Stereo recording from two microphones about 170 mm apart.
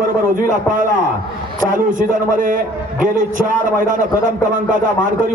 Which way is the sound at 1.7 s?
55° right (ahead or behind).